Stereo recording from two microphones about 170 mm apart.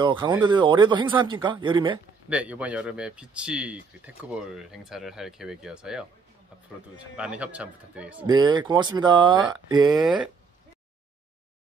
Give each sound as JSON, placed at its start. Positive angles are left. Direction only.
{"t": 0.0, "sound": "speech", "side_deg": -25}
{"t": 2.2, "sound": "speech", "side_deg": -10}
{"t": 7.2, "sound": "speech", "side_deg": -5}
{"t": 8.3, "sound": "speech", "side_deg": -25}
{"t": 10.0, "sound": "speech", "side_deg": -5}